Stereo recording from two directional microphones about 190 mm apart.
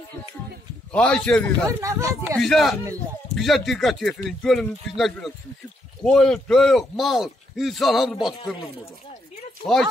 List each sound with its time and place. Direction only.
0.9 s a man's voice: 5° left (ahead or behind)
1.7 s speech: 15° right (ahead or behind)
2.3 s a man's voice: centre (ahead or behind)
9.7 s a man's voice: centre (ahead or behind)